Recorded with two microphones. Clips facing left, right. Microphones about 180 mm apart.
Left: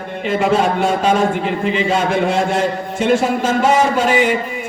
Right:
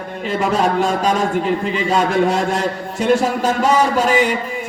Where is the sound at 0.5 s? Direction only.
40° right (ahead or behind).